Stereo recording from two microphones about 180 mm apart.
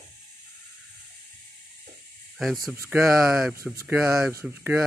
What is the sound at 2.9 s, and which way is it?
Speech, centre (ahead or behind).